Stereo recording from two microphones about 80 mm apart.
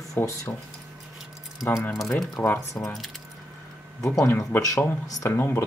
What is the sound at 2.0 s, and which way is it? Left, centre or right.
Speech, centre.